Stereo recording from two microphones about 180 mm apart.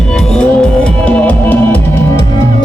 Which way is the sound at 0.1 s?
5° left (ahead or behind).